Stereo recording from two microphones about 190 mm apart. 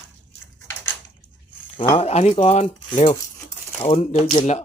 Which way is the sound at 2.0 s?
35° left (ahead or behind).